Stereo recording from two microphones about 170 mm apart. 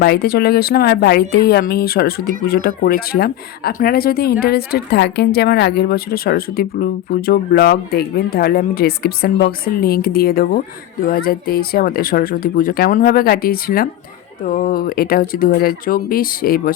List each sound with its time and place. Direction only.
0.0 s speech: 70° left (ahead or behind)